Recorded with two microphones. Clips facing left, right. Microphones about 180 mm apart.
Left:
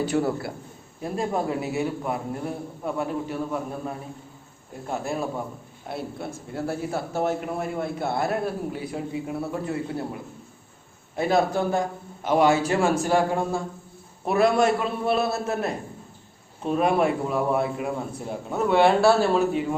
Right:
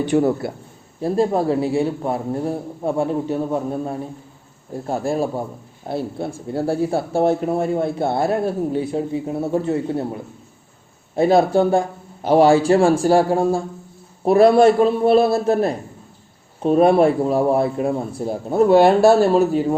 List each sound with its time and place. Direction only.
0.2 s a man's voice: 25° right (ahead or behind)
11.1 s a man's voice: 30° right (ahead or behind)